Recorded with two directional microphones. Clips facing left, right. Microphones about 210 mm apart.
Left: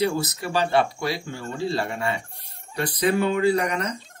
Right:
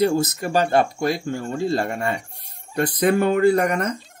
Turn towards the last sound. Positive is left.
turn(degrees=-50)  # may be behind; listen again after turning